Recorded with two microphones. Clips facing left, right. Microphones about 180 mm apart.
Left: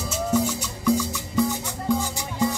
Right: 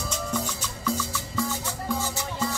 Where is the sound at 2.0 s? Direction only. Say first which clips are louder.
Left 4 dB; 15° left (ahead or behind).